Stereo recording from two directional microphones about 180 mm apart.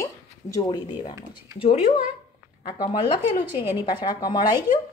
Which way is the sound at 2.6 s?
25° left (ahead or behind).